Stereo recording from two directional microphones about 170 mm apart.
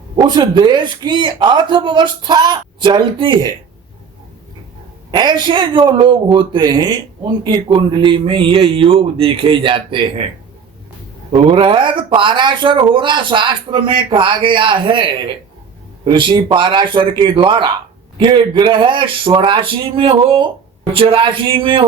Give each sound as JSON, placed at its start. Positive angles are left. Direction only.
{"t": 0.2, "sound": "speech", "side_deg": -25}
{"t": 5.1, "sound": "speech", "side_deg": -25}
{"t": 11.3, "sound": "speech", "side_deg": -30}